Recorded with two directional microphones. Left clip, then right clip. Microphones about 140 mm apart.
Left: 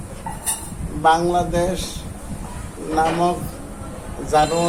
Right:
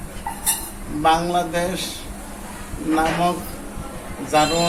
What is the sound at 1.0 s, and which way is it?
Speech, 20° left (ahead or behind).